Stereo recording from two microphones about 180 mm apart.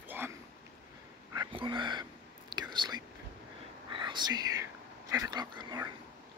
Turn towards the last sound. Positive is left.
turn(degrees=-20)  # may be behind; listen again after turning